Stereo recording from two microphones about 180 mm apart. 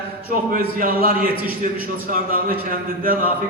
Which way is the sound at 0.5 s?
50° right (ahead or behind).